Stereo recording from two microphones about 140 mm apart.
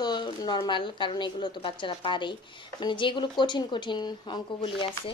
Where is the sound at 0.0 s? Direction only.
30° left (ahead or behind).